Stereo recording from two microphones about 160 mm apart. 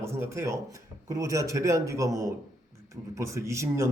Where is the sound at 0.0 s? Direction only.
15° right (ahead or behind).